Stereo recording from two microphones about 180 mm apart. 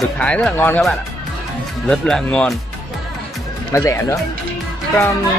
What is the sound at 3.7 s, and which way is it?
Speech, 15° left (ahead or behind).